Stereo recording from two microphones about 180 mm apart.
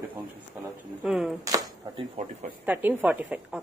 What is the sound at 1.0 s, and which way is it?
Speech, centre (ahead or behind).